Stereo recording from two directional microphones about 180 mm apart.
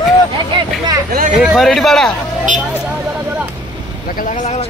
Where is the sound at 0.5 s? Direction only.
25° right (ahead or behind).